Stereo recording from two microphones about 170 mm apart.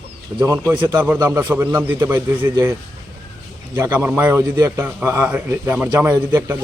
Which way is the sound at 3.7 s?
15° right (ahead or behind).